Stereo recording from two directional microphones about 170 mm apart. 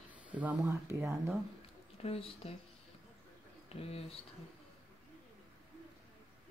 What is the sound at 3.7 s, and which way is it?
Speech, 35° left (ahead or behind).